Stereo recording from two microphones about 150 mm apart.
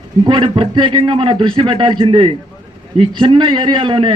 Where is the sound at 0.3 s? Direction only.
35° right (ahead or behind).